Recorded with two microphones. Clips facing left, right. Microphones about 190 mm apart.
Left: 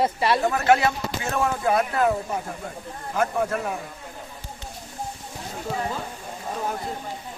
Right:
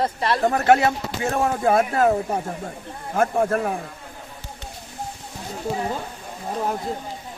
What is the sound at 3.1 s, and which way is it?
Speech, 50° right (ahead or behind).